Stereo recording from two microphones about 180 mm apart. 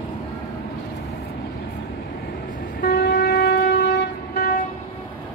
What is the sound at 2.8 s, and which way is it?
Train, 60° left (ahead or behind).